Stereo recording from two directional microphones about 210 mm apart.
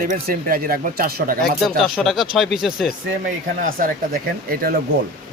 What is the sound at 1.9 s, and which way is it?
Speech, centre (ahead or behind).